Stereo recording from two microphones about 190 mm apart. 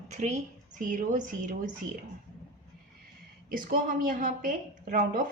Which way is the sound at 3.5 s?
45° right (ahead or behind).